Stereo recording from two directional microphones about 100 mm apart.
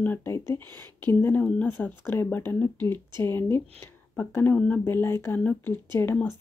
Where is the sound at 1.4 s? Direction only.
15° left (ahead or behind).